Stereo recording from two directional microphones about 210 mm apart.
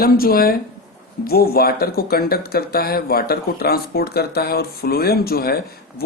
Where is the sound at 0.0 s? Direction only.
45° left (ahead or behind).